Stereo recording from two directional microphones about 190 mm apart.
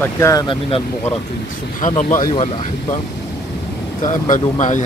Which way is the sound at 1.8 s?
40° left (ahead or behind).